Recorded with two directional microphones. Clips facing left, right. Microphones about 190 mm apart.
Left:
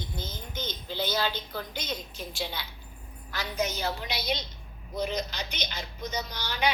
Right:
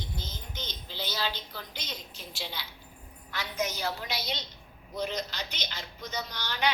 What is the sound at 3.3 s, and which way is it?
Speech, 40° left (ahead or behind).